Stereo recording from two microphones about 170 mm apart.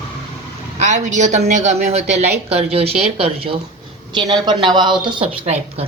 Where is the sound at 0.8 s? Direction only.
45° right (ahead or behind).